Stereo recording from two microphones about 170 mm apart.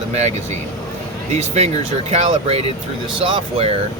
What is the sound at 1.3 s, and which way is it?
Speech, 40° right (ahead or behind).